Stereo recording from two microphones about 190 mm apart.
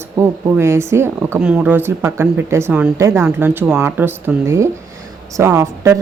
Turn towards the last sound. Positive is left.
turn(degrees=-15)  # may be behind; listen again after turning